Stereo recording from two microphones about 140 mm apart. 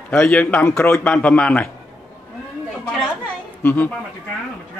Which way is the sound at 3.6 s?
10° left (ahead or behind).